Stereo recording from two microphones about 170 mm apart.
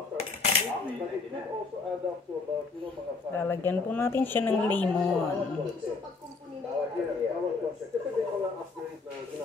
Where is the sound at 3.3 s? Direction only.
10° left (ahead or behind).